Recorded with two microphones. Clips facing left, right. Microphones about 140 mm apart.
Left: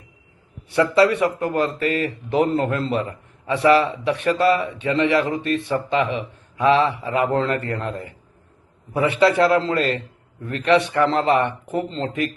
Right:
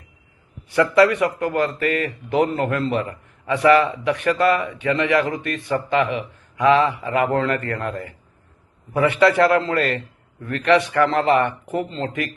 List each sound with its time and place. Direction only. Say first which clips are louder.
0.7 s speech: right 1 dB; 25° left (ahead or behind)